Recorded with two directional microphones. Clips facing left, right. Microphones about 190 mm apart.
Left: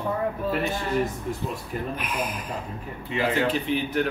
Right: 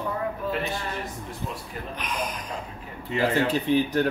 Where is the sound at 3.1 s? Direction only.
40° right (ahead or behind).